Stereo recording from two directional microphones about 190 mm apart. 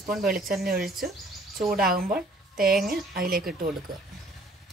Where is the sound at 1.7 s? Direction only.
50° right (ahead or behind).